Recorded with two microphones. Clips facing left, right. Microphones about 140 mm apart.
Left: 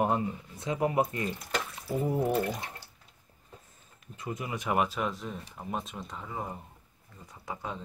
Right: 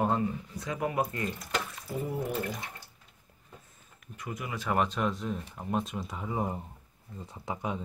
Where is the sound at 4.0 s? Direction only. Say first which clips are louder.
Left 2 dB; 25° left (ahead or behind); by 6.3 s 10° right (ahead or behind).